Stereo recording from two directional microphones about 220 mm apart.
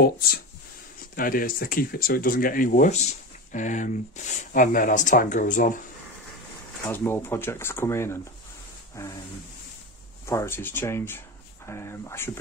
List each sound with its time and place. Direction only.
0.0 s speech: 45° left (ahead or behind)
6.9 s speech: 10° left (ahead or behind)
10.2 s speech: 10° left (ahead or behind)